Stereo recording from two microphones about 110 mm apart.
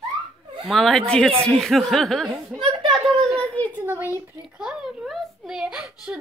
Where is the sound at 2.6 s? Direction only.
45° right (ahead or behind).